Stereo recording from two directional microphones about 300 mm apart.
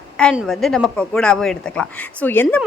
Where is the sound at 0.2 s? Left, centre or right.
Centre.